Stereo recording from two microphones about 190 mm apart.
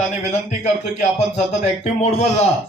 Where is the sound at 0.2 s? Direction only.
35° left (ahead or behind).